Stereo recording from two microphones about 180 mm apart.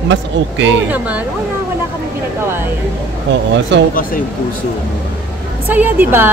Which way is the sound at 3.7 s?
80° right.